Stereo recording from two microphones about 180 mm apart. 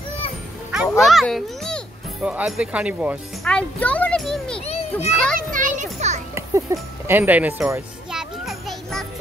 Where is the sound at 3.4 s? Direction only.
5° left (ahead or behind).